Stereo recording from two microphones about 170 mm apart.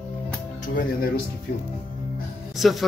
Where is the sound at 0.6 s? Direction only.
55° left (ahead or behind).